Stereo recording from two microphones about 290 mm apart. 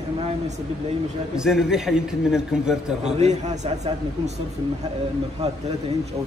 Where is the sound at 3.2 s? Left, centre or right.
Right.